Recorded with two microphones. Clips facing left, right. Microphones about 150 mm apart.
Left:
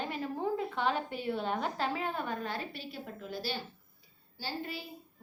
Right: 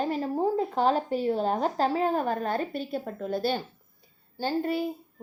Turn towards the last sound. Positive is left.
turn(degrees=-50)  # may be behind; listen again after turning